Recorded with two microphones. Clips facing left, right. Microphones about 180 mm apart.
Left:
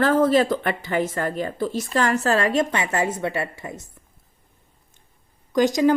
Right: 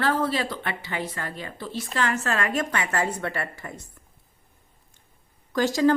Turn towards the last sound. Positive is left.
turn(degrees=15)  # may be behind; listen again after turning